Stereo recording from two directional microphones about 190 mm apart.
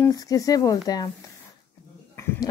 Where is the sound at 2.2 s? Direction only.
15° left (ahead or behind).